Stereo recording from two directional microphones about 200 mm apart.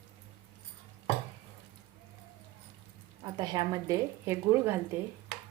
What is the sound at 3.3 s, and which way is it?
Speech, 20° right (ahead or behind).